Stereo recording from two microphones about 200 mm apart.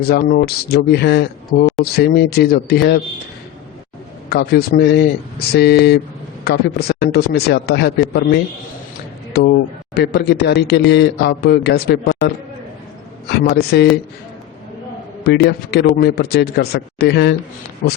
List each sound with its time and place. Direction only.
0.0 s a man's voice: 50° left (ahead or behind)
4.3 s a man's voice: 50° left (ahead or behind)
13.3 s speech: 55° left (ahead or behind)
15.2 s a man's voice: 55° left (ahead or behind)